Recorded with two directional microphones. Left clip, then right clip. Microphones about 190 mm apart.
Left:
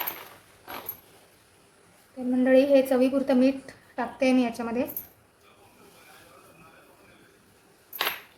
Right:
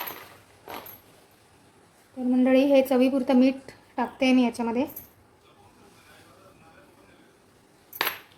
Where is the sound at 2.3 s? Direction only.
25° right (ahead or behind).